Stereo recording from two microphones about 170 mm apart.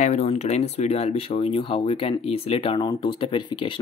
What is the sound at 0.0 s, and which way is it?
Speech, 40° left (ahead or behind).